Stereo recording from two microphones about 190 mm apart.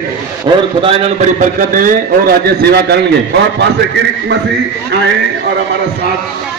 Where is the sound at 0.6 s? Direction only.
30° right (ahead or behind); by 3.0 s 55° right (ahead or behind).